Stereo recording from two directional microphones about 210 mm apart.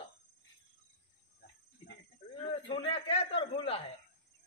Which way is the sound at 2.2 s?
25° left (ahead or behind).